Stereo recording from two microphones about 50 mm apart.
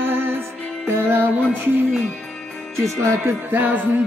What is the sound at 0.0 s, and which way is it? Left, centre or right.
Music, right.